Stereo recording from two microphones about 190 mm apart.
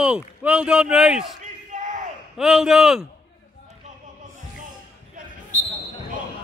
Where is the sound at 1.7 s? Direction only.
40° right (ahead or behind).